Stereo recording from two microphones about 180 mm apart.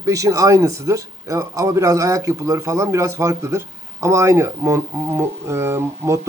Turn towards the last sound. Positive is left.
turn(degrees=-15)  # may be behind; listen again after turning